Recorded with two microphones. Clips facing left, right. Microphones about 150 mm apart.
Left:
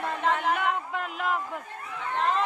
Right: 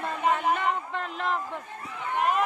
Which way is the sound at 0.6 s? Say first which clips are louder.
Even; 5° left (ahead or behind).